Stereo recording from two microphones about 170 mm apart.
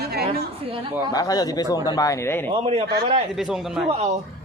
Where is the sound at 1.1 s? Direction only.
20° left (ahead or behind).